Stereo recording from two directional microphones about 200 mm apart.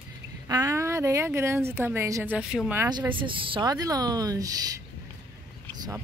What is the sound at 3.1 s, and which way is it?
A woman's voice, 25° right (ahead or behind).